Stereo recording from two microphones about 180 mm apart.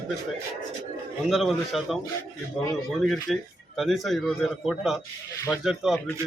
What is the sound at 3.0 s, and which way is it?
Speech, centre (ahead or behind).